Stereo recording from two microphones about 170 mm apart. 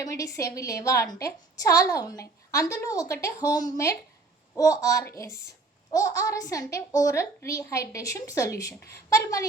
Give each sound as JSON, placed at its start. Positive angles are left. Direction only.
{"t": 0.0, "sound": "a woman's voice", "side_deg": 20}